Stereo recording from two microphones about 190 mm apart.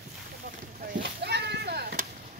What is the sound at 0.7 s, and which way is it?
Chop, 50° right (ahead or behind).